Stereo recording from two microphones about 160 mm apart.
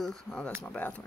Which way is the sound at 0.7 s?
10° left (ahead or behind).